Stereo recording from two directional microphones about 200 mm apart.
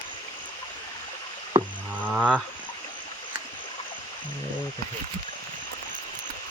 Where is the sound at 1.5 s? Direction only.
20° right (ahead or behind).